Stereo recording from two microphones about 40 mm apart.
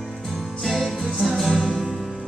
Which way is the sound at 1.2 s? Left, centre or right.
Centre.